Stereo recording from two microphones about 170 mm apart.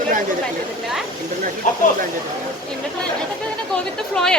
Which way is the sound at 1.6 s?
45° left (ahead or behind).